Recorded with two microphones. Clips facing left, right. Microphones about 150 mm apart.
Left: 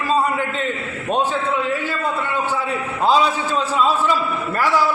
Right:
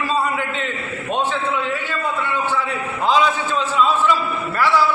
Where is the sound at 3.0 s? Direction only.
35° left (ahead or behind).